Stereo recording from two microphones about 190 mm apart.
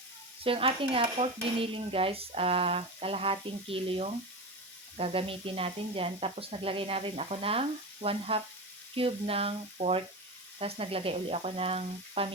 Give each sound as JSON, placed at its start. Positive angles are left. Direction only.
{"t": 0.4, "sound": "dishes", "side_deg": -30}
{"t": 9.0, "sound": "speech", "side_deg": -30}